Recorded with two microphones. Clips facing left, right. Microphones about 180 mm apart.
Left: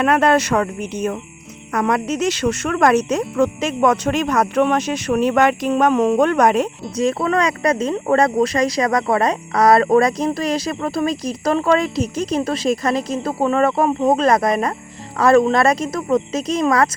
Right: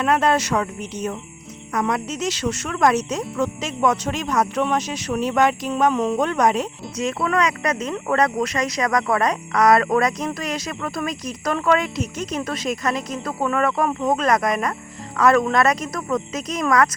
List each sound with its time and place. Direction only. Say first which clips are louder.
0.0 s speech: left 4 dB; 60° left (ahead or behind)
6.9 s speech: left 4 dB; 35° left (ahead or behind)